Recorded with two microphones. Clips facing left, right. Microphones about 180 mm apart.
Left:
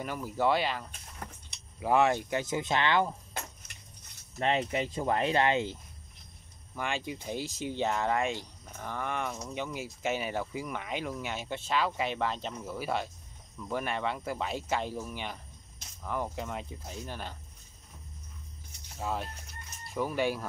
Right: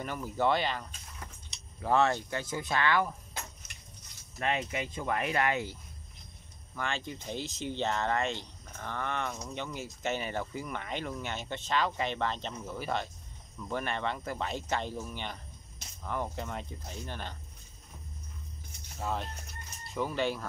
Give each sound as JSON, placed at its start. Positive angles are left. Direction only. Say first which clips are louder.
{"t": 0.0, "sound": "speech", "louder": "left 1 dB", "side_deg": 5}
{"t": 4.4, "sound": "speech", "louder": "left 3 dB", "side_deg": 30}
{"t": 6.7, "sound": "speech", "louder": "left 2 dB", "side_deg": 10}
{"t": 18.9, "sound": "speech", "louder": "even", "side_deg": 5}